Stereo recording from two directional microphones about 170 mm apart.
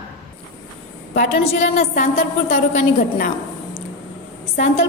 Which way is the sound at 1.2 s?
45° left (ahead or behind).